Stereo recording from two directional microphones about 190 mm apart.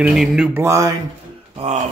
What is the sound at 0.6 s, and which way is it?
Speech, 15° right (ahead or behind).